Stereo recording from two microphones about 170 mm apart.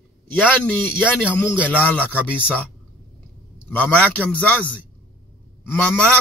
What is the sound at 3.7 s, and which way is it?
Speech, 10° left (ahead or behind).